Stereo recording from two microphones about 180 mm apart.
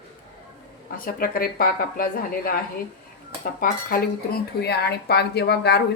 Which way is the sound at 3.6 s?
55° left (ahead or behind).